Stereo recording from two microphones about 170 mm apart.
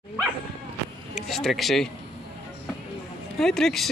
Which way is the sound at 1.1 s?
Centre (ahead or behind).